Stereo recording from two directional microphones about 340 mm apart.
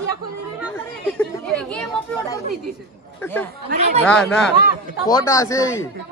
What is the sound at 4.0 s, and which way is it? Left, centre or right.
Speech, centre.